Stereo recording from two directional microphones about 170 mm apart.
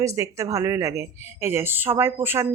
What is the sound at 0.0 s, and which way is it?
Speech, 20° right (ahead or behind).